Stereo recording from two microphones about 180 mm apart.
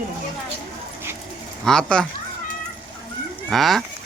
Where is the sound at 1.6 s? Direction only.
5° left (ahead or behind).